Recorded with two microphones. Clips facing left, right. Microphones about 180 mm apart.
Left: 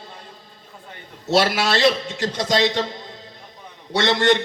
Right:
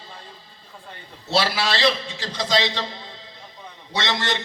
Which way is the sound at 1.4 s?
55° left (ahead or behind).